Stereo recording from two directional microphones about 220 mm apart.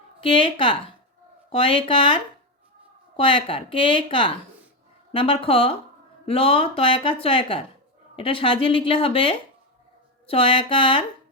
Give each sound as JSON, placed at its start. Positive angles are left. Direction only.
{"t": 0.2, "sound": "speech", "side_deg": 25}
{"t": 3.2, "sound": "speech", "side_deg": 25}